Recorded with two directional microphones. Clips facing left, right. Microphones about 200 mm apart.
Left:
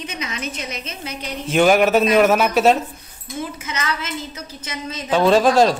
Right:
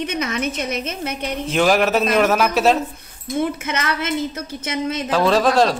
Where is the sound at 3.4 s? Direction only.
55° right (ahead or behind).